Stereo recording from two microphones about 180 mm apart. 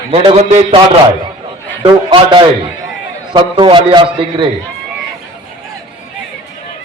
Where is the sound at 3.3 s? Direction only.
25° right (ahead or behind).